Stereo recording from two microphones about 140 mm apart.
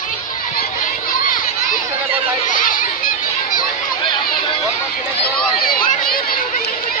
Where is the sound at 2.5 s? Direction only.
75° left (ahead or behind).